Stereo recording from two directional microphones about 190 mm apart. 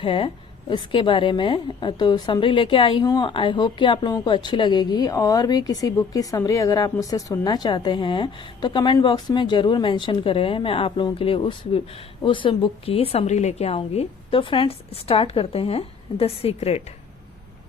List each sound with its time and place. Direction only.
0.0 s a woman's voice: 30° left (ahead or behind)